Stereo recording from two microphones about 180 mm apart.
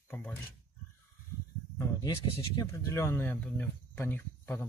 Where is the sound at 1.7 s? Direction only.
20° left (ahead or behind).